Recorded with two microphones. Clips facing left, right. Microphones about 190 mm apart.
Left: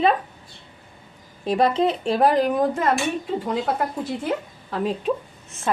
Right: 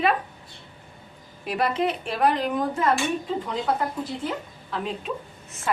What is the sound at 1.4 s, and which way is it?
Speech, 30° left (ahead or behind).